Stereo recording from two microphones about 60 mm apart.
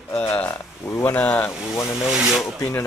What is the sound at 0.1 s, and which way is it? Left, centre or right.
Speech, left.